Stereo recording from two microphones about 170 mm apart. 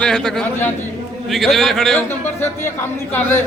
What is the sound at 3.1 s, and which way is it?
Speech, 15° left (ahead or behind).